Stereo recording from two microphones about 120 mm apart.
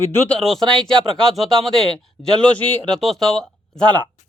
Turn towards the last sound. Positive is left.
turn(degrees=10)  # may be behind; listen again after turning